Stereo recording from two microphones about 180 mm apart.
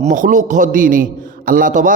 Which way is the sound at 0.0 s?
45° right (ahead or behind).